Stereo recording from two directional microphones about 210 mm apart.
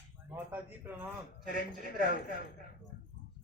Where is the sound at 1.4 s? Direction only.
40° right (ahead or behind).